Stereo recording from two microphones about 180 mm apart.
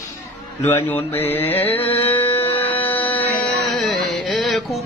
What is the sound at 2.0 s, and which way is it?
Music, 10° left (ahead or behind).